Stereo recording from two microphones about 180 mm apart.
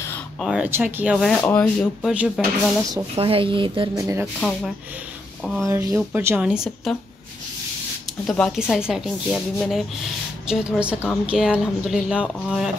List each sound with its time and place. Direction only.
0.4 s speech: 5° right (ahead or behind)
1.1 s a woman's voice: centre (ahead or behind)
3.2 s speech: 30° right (ahead or behind)
4.4 s a woman's voice: 5° left (ahead or behind)
5.7 s a woman's voice: 20° right (ahead or behind); by 7.0 s centre (ahead or behind)
8.3 s a woman's voice: centre (ahead or behind)